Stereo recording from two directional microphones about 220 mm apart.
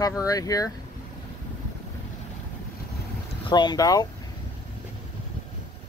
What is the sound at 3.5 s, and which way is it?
Speech, 20° left (ahead or behind).